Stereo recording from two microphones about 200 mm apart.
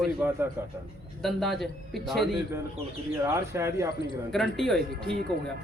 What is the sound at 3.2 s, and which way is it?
Speech, 15° right (ahead or behind).